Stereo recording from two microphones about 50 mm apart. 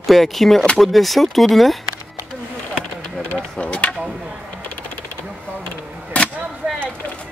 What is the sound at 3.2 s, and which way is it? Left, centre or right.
Speech, centre.